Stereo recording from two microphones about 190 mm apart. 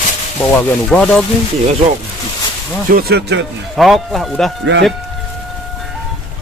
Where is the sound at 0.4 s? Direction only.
5° left (ahead or behind).